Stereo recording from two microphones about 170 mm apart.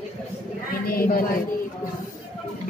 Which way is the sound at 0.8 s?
60° left (ahead or behind).